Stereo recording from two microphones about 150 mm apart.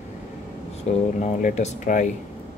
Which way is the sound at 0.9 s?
50° left (ahead or behind).